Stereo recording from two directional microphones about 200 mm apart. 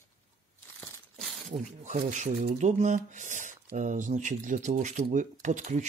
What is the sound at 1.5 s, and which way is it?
Speech, 35° right (ahead or behind).